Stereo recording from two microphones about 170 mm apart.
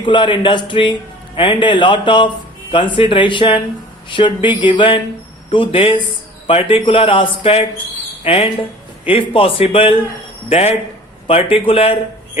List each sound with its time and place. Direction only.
0.0 s a man's voice: 30° left (ahead or behind)
11.3 s a man's voice: 30° left (ahead or behind)